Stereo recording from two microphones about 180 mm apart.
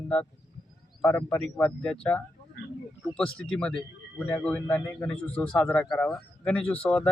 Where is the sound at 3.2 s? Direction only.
5° left (ahead or behind).